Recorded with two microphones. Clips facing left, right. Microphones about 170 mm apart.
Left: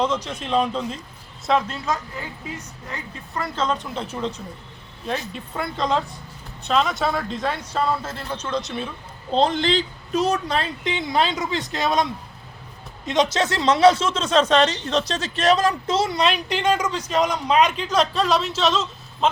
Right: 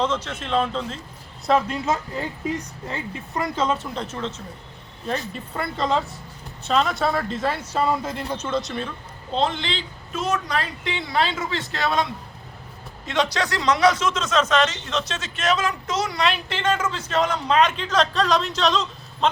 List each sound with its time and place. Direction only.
0.0 s a man's voice: 15° left (ahead or behind)
1.5 s speech: 5° right (ahead or behind)
2.8 s speech: 25° right (ahead or behind)
3.9 s a man's voice: 10° left (ahead or behind)
5.0 s speech: centre (ahead or behind)
9.3 s speech: 40° left (ahead or behind); by 12.0 s 20° left (ahead or behind)
13.1 s speech: 20° left (ahead or behind); by 19.3 s 5° left (ahead or behind)